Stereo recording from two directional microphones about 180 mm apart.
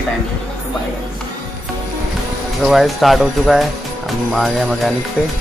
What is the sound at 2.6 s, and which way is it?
Speech, centre (ahead or behind).